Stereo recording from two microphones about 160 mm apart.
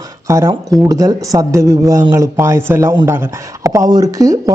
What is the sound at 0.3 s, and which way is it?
Speech, 20° right (ahead or behind).